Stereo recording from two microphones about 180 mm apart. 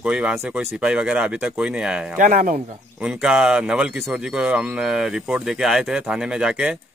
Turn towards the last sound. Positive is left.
turn(degrees=-5)  # may be behind; listen again after turning